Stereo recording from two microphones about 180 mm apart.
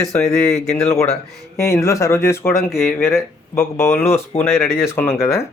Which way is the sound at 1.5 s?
15° left (ahead or behind).